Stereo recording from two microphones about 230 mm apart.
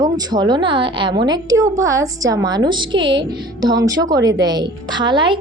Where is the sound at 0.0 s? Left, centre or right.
Centre.